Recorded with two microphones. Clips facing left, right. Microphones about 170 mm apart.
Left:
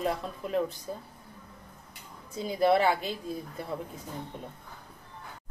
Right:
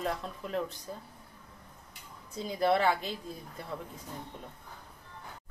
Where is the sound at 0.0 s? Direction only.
15° left (ahead or behind).